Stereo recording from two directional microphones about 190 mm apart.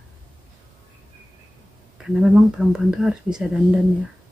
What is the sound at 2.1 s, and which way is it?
Speech, 5° right (ahead or behind).